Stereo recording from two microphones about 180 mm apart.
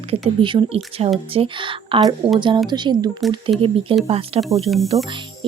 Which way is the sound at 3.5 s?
Centre (ahead or behind).